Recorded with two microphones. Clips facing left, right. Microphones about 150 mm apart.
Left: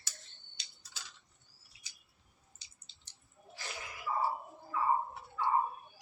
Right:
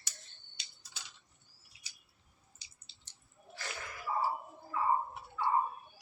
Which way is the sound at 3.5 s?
15° left (ahead or behind).